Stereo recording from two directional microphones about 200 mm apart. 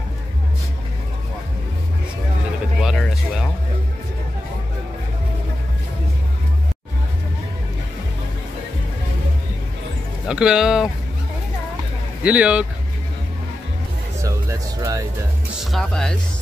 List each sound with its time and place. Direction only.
2.8 s a sound: centre (ahead or behind)
10.2 s speech: 5° right (ahead or behind)
12.2 s speech: 5° right (ahead or behind)
14.2 s music: 15° right (ahead or behind)
15.6 s speech: centre (ahead or behind)